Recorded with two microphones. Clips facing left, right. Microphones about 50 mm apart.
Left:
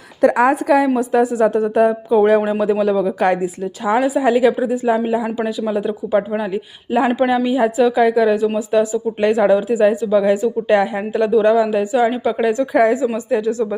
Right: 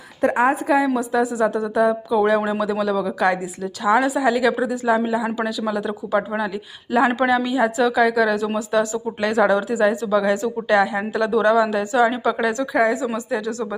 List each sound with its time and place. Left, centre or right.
0.2 s a woman's voice: left
0.5 s a woman's voice: left
3.9 s speech: centre
4.2 s a woman's voice: left
11.3 s speech: centre
12.7 s a woman's voice: left
13.1 s speech: left